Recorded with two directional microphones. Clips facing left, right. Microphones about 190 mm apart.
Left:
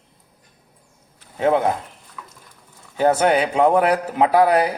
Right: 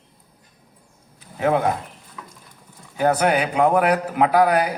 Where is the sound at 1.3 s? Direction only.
25° left (ahead or behind).